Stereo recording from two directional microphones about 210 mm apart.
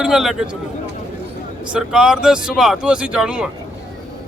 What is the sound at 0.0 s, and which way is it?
Speech, centre (ahead or behind).